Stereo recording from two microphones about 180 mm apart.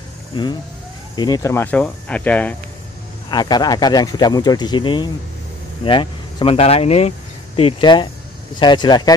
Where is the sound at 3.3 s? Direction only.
25° left (ahead or behind).